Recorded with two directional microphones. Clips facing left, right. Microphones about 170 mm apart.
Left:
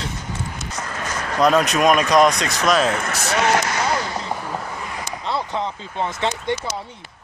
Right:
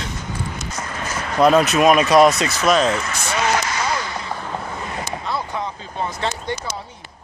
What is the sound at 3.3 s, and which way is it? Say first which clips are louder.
Speech: left 2 dB; 65° left (ahead or behind).